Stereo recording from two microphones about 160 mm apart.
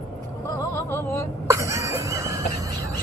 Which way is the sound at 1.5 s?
20° right (ahead or behind).